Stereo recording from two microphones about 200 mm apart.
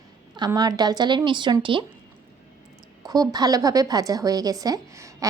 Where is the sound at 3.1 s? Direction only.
20° right (ahead or behind).